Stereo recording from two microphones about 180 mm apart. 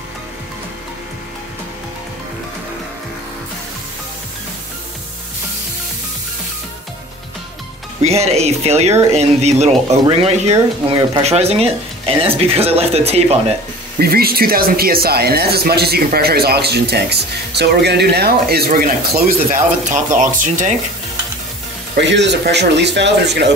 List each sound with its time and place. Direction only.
8.0 s speech: 35° right (ahead or behind)
13.9 s speech: 55° right (ahead or behind)
21.9 s speech: 75° right (ahead or behind)